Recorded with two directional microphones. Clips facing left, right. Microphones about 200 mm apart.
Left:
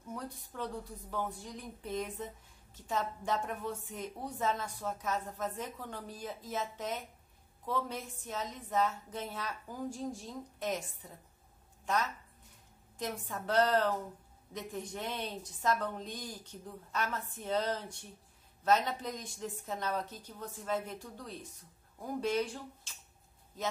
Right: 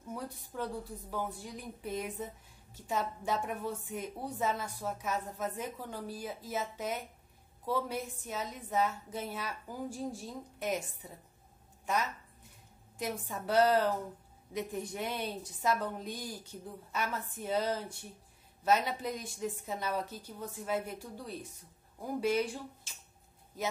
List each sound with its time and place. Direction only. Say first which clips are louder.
0.1 s a woman's voice: right 2 dB; 5° right (ahead or behind)